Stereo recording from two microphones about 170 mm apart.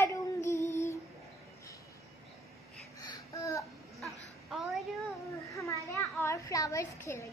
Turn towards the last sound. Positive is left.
turn(degrees=15)  # may be behind; listen again after turning